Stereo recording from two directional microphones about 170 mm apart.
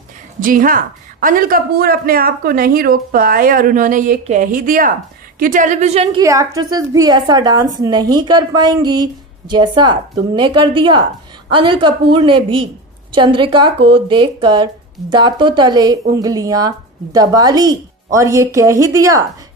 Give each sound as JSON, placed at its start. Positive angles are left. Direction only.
{"t": 0.4, "sound": "a woman's voice", "side_deg": -55}
{"t": 6.1, "sound": "a woman's voice", "side_deg": -20}